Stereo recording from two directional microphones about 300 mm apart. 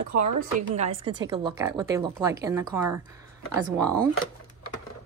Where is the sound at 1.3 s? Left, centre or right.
Centre.